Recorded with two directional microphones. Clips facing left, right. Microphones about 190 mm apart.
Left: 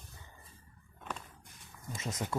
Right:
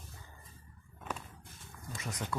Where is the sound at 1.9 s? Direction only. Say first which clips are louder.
Left 3 dB; 20° left (ahead or behind).